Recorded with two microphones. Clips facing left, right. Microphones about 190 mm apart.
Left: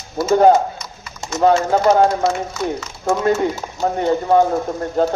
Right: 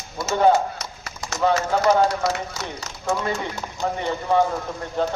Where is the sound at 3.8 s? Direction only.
45° left (ahead or behind).